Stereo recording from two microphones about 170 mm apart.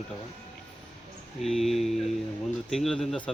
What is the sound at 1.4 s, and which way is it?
Speech, centre (ahead or behind).